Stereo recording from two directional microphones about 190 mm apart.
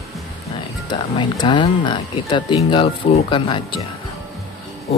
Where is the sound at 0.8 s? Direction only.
25° left (ahead or behind).